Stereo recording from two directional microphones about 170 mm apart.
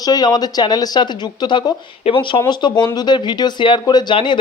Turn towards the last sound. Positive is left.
turn(degrees=25)  # may be behind; listen again after turning